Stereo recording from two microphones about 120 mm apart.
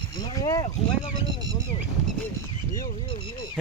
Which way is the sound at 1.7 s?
45° left (ahead or behind).